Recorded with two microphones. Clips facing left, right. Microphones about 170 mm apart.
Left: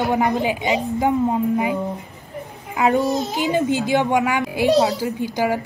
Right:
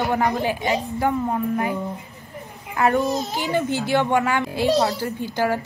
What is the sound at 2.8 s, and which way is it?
Speech, 15° left (ahead or behind).